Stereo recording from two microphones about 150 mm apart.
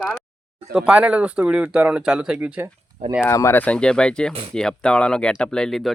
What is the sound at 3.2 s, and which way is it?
Speech, 20° left (ahead or behind).